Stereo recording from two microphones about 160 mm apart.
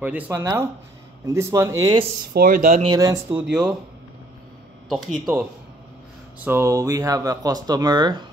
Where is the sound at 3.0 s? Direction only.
25° right (ahead or behind).